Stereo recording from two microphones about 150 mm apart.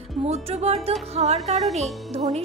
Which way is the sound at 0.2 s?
45° right (ahead or behind).